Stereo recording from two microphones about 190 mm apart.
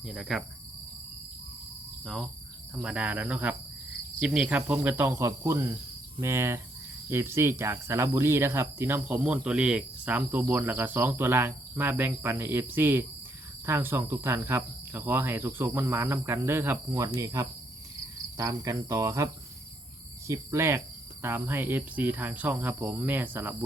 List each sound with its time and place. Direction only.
0.0 s cricket: centre (ahead or behind)
2.8 s speech: 5° right (ahead or behind)